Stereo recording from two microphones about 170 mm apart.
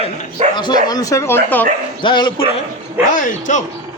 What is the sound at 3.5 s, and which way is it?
Speech, 45° left (ahead or behind).